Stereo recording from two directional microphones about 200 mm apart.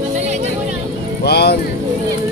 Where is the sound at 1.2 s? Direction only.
55° left (ahead or behind).